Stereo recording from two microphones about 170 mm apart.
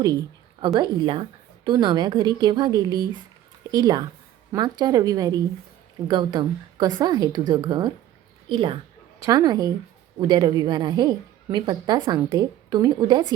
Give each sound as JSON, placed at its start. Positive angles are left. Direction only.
{"t": 0.8, "sound": "a woman's voice", "side_deg": -30}